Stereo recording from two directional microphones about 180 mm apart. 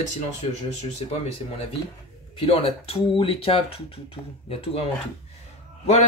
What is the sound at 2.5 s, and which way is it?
Speech, 30° left (ahead or behind).